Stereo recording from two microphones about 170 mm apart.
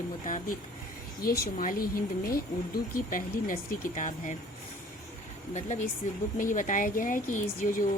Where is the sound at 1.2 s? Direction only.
65° left (ahead or behind).